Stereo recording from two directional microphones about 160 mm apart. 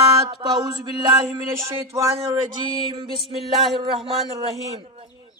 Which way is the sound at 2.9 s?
35° right (ahead or behind).